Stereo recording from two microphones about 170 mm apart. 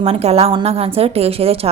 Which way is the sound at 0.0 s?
35° right (ahead or behind).